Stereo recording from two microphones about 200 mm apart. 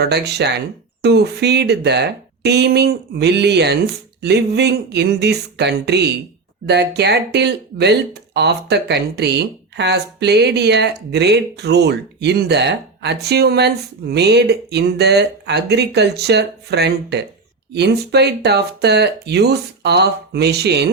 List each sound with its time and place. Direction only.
0.0 s speech: 55° right (ahead or behind)